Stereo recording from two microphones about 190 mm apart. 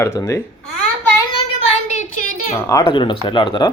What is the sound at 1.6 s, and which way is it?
Child singing, 35° left (ahead or behind).